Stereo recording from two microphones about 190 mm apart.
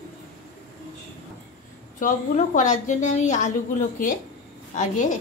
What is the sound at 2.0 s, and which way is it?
A woman's voice, 45° left (ahead or behind).